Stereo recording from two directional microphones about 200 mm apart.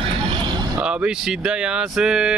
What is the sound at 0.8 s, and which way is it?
Speech, 5° right (ahead or behind).